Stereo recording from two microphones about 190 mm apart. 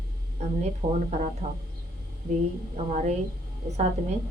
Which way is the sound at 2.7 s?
35° right (ahead or behind).